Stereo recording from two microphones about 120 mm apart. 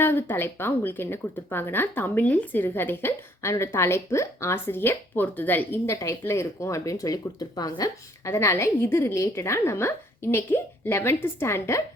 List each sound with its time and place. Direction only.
0.0 s speech: 20° left (ahead or behind)